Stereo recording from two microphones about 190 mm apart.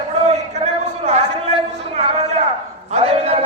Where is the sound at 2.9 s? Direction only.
35° right (ahead or behind).